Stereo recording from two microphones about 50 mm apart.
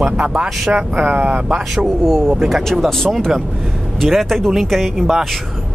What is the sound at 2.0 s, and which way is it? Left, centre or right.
Speech, centre.